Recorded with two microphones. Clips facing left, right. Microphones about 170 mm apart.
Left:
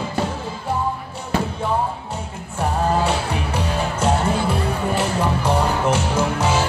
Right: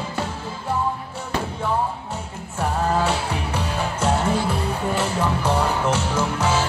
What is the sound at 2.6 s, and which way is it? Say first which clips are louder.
Music: left 2 dB; 15° left (ahead or behind).